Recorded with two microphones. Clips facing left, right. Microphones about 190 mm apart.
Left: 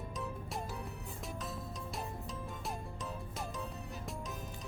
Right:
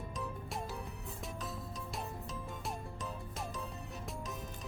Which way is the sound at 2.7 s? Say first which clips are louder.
Even; centre (ahead or behind).